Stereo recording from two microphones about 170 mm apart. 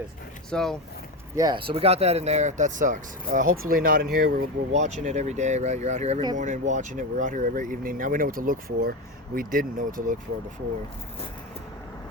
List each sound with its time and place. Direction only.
0.5 s speech: 5° left (ahead or behind)
1.4 s speech: 25° right (ahead or behind); by 4.4 s 60° right (ahead or behind)
5.0 s speech: 45° right (ahead or behind)